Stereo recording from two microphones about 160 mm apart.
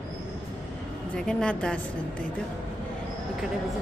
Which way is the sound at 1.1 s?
5° left (ahead or behind).